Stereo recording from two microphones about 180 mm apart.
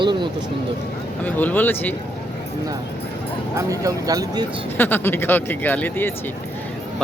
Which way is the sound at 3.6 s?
20° right (ahead or behind).